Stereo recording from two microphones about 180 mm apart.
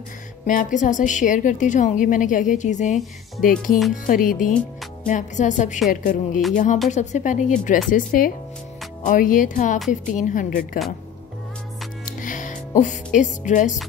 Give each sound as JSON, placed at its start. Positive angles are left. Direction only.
{"t": 0.5, "sound": "a woman's voice", "side_deg": 45}
{"t": 3.4, "sound": "speech", "side_deg": -5}
{"t": 3.9, "sound": "a woman's voice", "side_deg": 45}
{"t": 12.2, "sound": "music", "side_deg": 45}